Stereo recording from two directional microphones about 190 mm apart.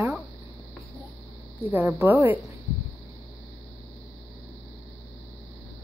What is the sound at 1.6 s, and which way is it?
Speech, 10° right (ahead or behind).